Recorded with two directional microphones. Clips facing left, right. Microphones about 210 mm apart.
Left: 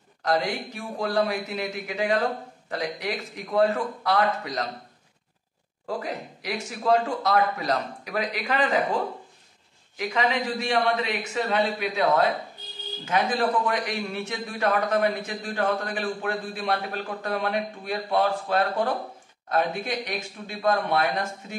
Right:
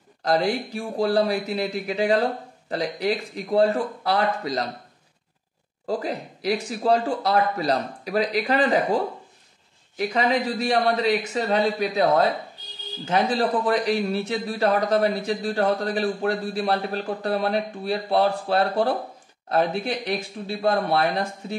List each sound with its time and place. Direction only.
0.2 s a man's voice: 35° right (ahead or behind)
5.9 s a man's voice: 35° right (ahead or behind)